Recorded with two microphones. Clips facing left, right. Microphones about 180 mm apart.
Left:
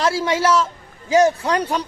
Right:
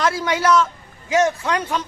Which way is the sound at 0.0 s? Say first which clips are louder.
Left 1 dB; 30° left (ahead or behind).